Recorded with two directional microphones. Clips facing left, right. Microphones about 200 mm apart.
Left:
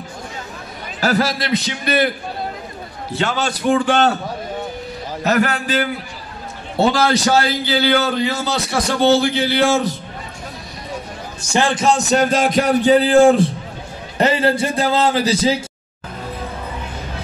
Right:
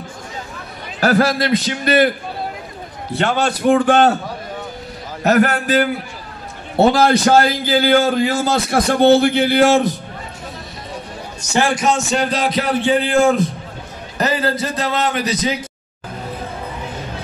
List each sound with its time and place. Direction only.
1.0 s a man's voice: 55° right (ahead or behind)
3.2 s a man's voice: 55° right (ahead or behind)
5.2 s a man's voice: 45° right (ahead or behind)
6.8 s a man's voice: 55° right (ahead or behind)
11.7 s a man's voice: 30° left (ahead or behind)